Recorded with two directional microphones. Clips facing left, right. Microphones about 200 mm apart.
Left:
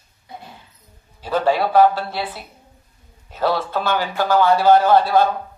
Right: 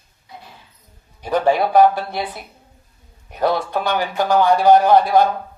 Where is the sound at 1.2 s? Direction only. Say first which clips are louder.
Right 2 dB; 15° right (ahead or behind).